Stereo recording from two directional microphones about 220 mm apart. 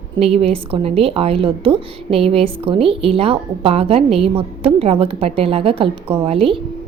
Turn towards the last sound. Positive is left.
turn(degrees=-25)  # may be behind; listen again after turning